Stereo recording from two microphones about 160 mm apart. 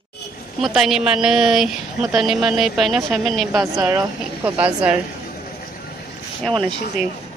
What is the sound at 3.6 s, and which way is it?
A woman's voice, 15° right (ahead or behind).